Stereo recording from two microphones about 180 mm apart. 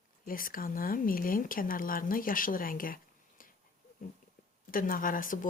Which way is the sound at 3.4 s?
50° left (ahead or behind).